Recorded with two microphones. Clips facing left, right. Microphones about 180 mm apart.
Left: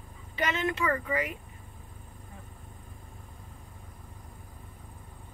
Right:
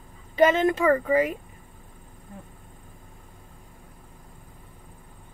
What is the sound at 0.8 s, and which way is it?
Speech, 30° right (ahead or behind).